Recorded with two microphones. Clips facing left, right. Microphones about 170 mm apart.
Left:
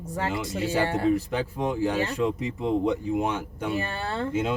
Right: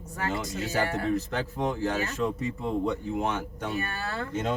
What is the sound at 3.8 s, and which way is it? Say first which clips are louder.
Speech: left 3 dB; 30° left (ahead or behind).